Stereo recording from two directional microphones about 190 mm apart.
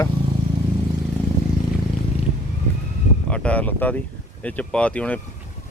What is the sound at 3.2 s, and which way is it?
Speech, 5° left (ahead or behind).